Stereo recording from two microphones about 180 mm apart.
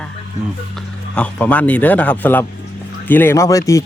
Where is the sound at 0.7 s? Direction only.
5° left (ahead or behind).